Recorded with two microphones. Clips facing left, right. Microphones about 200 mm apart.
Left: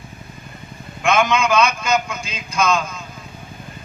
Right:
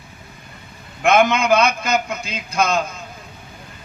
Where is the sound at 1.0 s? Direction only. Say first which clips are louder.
Right 2 dB; 60° right (ahead or behind).